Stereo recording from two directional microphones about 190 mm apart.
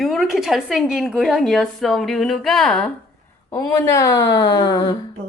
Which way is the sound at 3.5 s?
15° left (ahead or behind).